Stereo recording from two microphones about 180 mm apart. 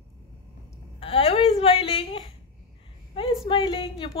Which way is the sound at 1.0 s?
35° left (ahead or behind).